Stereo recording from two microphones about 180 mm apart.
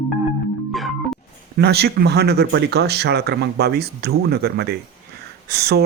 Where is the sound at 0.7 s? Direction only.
Centre (ahead or behind).